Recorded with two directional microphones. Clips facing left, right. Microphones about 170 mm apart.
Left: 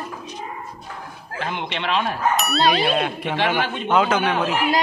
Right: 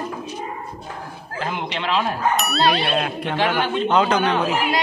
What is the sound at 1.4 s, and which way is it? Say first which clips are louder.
Speech: right 1 dB; 5° right (ahead or behind).